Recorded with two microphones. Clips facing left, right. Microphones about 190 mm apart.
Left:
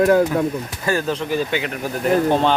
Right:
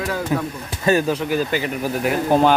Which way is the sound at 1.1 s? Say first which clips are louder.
Right 1 dB; 5° right (ahead or behind).